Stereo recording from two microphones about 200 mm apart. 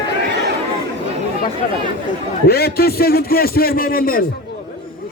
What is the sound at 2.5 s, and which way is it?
A man's voice, 50° left (ahead or behind).